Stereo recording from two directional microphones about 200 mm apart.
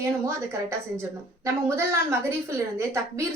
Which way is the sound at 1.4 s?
15° right (ahead or behind).